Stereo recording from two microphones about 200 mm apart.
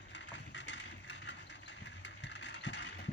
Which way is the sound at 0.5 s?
65° left (ahead or behind).